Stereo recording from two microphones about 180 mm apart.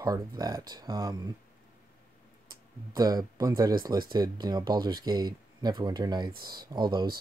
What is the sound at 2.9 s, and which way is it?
Speech, 20° right (ahead or behind).